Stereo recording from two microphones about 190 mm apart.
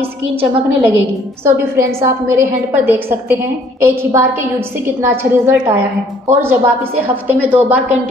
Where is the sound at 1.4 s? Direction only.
15° right (ahead or behind).